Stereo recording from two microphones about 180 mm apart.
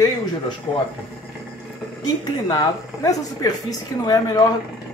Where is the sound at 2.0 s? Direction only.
25° left (ahead or behind).